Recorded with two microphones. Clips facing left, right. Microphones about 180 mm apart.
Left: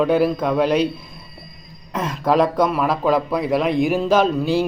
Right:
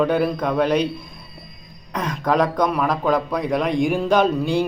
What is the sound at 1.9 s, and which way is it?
A man's voice, 5° left (ahead or behind).